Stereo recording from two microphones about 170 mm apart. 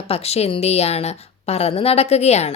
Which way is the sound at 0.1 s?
35° left (ahead or behind).